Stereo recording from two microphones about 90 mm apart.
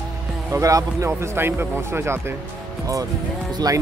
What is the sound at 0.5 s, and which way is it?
Speech, 35° right (ahead or behind).